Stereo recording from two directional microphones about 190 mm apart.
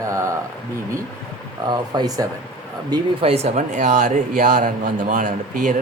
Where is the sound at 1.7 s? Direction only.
20° right (ahead or behind).